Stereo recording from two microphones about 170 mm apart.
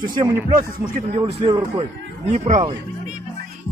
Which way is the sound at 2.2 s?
40° right (ahead or behind).